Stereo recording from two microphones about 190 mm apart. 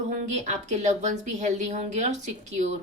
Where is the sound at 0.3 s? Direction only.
35° right (ahead or behind).